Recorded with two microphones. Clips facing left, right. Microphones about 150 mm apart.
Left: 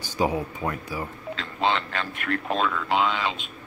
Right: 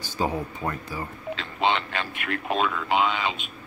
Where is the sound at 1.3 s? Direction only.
15° right (ahead or behind).